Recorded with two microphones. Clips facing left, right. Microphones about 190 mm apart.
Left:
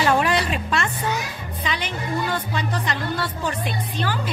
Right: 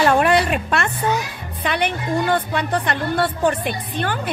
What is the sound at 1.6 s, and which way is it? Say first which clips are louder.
A woman's voice: right 6 dB; 60° right (ahead or behind).